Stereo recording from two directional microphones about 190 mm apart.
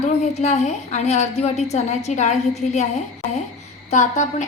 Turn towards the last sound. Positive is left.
turn(degrees=40)  # may be behind; listen again after turning